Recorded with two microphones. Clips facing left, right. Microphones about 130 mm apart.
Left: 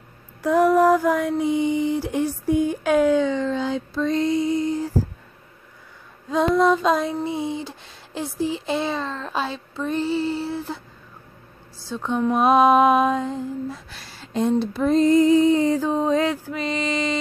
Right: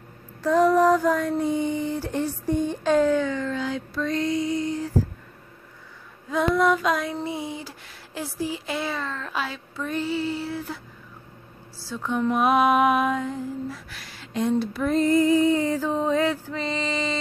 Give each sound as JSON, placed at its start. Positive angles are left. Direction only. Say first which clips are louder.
{"t": 0.4, "sound": "a sound", "louder": "left 2 dB", "side_deg": 10}
{"t": 6.3, "sound": "speech", "louder": "left 3 dB", "side_deg": 25}
{"t": 11.8, "sound": "speech", "louder": "left 2 dB", "side_deg": 25}